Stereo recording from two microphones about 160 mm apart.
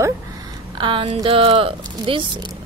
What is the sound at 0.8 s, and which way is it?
Speech, 35° right (ahead or behind).